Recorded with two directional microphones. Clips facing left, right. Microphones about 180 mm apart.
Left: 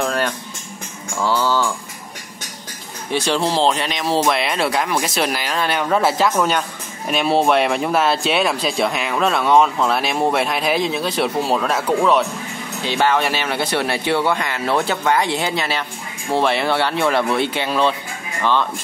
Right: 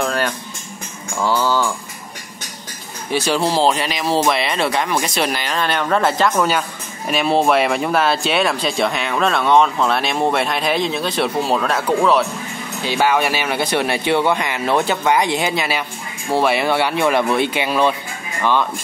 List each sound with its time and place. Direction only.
0.0 s music: centre (ahead or behind)
1.2 s mantra: 15° right (ahead or behind)
3.1 s speech: 5° right (ahead or behind)
12.8 s speech: 10° right (ahead or behind)